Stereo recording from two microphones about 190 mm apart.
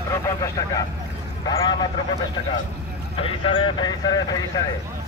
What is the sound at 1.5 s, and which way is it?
Speech, 25° left (ahead or behind).